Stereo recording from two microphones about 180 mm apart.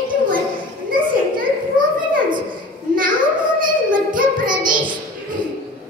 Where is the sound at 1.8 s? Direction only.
50° right (ahead or behind).